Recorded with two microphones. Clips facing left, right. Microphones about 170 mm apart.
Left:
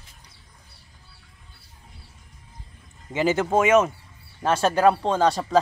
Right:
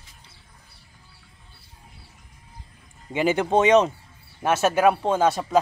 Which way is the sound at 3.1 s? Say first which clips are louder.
Even; 15° right (ahead or behind).